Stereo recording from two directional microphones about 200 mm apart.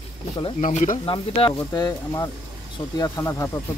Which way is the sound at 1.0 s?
25° left (ahead or behind).